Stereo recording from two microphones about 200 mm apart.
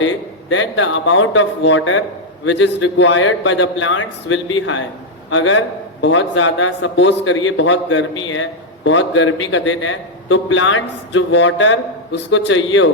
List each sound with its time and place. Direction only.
0.5 s a man's voice: 70° left (ahead or behind)